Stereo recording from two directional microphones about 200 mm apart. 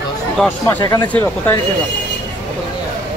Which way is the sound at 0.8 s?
20° left (ahead or behind).